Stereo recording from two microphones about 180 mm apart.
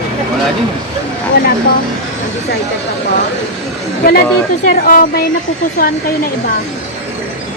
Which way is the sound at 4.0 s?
60° left (ahead or behind).